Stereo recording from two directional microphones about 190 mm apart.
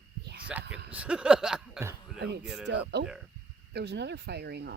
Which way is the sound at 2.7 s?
65° right (ahead or behind).